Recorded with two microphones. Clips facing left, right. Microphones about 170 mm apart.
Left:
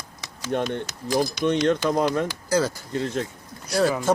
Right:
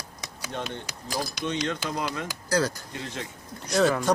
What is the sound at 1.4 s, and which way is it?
Speech, 55° left (ahead or behind).